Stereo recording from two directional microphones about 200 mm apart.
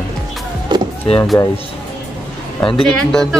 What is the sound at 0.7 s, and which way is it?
Power windows, 20° right (ahead or behind).